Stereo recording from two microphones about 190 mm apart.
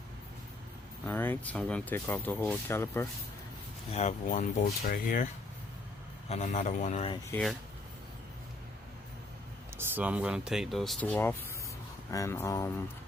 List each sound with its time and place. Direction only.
1.0 s speech: 10° left (ahead or behind)
3.9 s a man's voice: 40° left (ahead or behind)
4.6 s a man's voice: 50° left (ahead or behind); by 7.2 s 35° left (ahead or behind)
9.7 s speech: 10° right (ahead or behind); by 12.7 s 15° left (ahead or behind)